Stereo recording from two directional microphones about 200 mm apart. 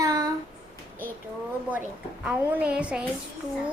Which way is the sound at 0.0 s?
20° right (ahead or behind).